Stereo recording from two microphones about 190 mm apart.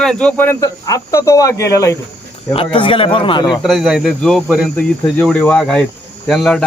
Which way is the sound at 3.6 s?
Centre (ahead or behind).